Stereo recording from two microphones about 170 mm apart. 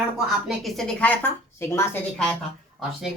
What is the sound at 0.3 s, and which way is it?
A woman's voice, centre (ahead or behind).